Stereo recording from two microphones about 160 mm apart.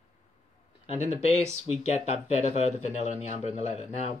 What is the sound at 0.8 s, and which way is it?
Speech, 45° left (ahead or behind).